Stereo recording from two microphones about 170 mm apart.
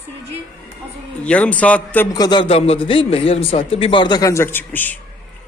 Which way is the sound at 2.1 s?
25° left (ahead or behind).